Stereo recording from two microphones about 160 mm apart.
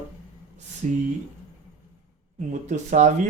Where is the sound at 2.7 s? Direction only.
50° right (ahead or behind).